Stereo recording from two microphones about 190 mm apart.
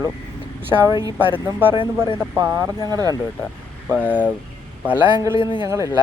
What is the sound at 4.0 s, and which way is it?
Speech, 5° left (ahead or behind).